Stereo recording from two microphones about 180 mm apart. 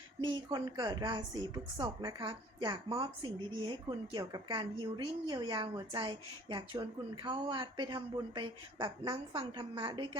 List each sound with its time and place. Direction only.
0.2 s a woman's voice: 25° right (ahead or behind)